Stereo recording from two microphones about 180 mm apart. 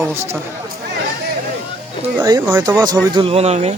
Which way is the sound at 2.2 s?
15° right (ahead or behind).